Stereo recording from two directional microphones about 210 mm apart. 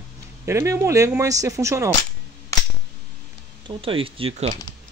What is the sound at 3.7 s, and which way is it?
Speech, 25° right (ahead or behind).